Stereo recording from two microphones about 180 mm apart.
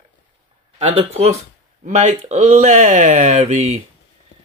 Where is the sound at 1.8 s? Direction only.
40° right (ahead or behind).